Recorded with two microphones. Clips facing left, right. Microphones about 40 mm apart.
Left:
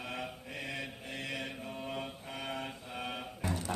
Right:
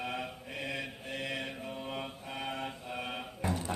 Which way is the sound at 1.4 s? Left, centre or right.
Centre.